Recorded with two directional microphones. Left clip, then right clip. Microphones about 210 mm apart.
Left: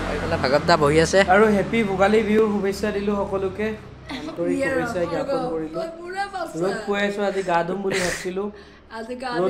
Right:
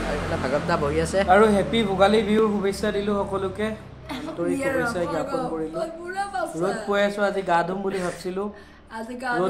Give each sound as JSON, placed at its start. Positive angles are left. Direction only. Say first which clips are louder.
{"t": 0.4, "sound": "speech", "louder": "left 8 dB", "side_deg": 35}
{"t": 1.3, "sound": "speech", "louder": "even", "side_deg": 15}
{"t": 4.5, "sound": "a man's voice", "louder": "left 1 dB", "side_deg": -35}
{"t": 6.9, "sound": "speech", "louder": "right 4 dB", "side_deg": 10}
{"t": 7.9, "sound": "speech", "louder": "left 5 dB", "side_deg": 40}